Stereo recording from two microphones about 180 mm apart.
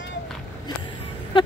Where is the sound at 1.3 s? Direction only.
30° left (ahead or behind).